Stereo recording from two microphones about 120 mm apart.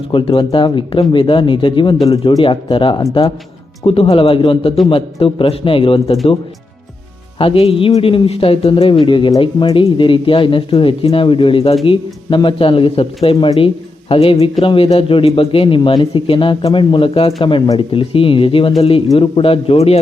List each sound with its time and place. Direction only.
0.1 s a man's voice: 45° left (ahead or behind)
7.3 s a man's voice: 50° left (ahead or behind)